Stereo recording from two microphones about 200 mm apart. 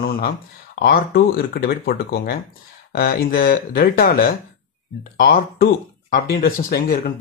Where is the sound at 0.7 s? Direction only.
55° left (ahead or behind).